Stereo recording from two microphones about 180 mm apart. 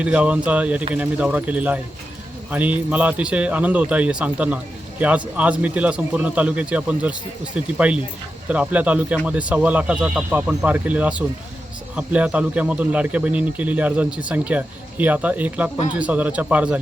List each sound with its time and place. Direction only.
0.0 s a man's voice: 5° right (ahead or behind)